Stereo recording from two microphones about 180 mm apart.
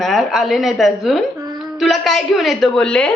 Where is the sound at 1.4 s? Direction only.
20° right (ahead or behind).